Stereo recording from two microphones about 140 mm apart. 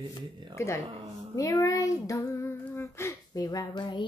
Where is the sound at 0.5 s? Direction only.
20° left (ahead or behind).